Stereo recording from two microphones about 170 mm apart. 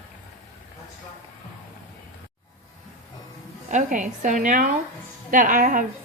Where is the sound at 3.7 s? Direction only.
45° right (ahead or behind).